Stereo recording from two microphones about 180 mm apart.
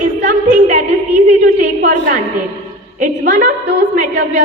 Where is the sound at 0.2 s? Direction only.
45° right (ahead or behind).